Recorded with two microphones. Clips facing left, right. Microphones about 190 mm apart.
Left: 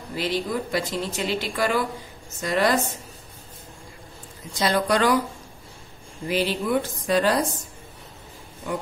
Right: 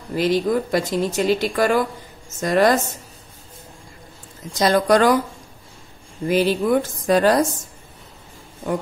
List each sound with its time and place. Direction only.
0.1 s speech: 45° right (ahead or behind)
4.6 s speech: 45° right (ahead or behind)
6.2 s speech: 45° right (ahead or behind)